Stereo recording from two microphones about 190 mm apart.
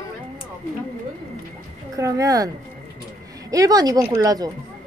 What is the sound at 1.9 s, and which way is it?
Speech, 15° right (ahead or behind).